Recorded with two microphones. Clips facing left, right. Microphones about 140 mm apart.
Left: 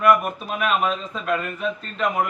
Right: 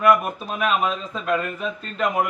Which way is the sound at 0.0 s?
5° right (ahead or behind).